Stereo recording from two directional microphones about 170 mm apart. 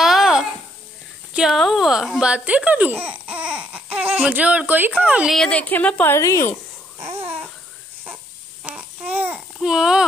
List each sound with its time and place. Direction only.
0.0 s a sound: 5° right (ahead or behind)
1.3 s a child's voice: centre (ahead or behind); by 6.4 s 20° left (ahead or behind)
7.0 s babbling: 15° right (ahead or behind)
8.6 s babbling: 5° right (ahead or behind)